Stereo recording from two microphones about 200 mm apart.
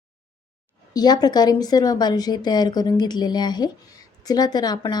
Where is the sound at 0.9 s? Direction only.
20° left (ahead or behind).